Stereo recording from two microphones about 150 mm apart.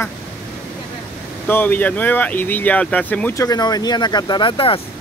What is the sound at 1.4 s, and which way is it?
Speech, 10° left (ahead or behind).